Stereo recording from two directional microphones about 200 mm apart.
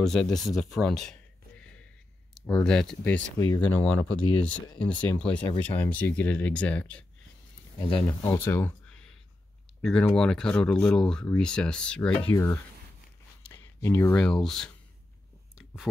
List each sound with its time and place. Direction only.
0.0 s speech: centre (ahead or behind)
4.2 s speech: 25° left (ahead or behind)
4.8 s speech: 10° left (ahead or behind)
8.4 s a sound: 10° left (ahead or behind)
9.8 s speech: 5° left (ahead or behind)
15.5 s a sound: 5° right (ahead or behind)